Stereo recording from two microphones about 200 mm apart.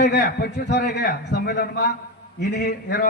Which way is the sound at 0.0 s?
55° left (ahead or behind).